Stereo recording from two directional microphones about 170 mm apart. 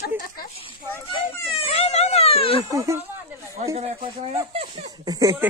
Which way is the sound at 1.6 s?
40° left (ahead or behind).